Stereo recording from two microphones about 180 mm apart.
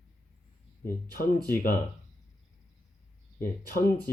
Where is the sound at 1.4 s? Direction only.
55° left (ahead or behind).